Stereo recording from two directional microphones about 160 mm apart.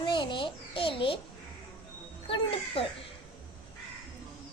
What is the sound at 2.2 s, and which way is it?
Music, 35° left (ahead or behind).